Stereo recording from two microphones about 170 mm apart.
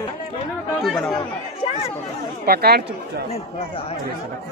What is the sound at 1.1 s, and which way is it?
Speech, 35° left (ahead or behind).